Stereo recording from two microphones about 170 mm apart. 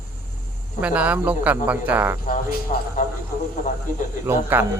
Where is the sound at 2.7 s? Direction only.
45° left (ahead or behind).